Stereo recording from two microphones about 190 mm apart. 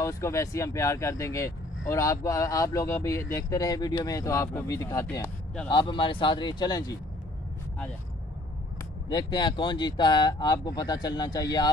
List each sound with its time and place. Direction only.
0.0 s speech: 15° left (ahead or behind)
9.1 s speech: 25° left (ahead or behind)